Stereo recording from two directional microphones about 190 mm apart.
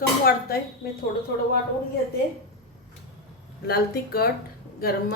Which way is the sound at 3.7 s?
55° left (ahead or behind).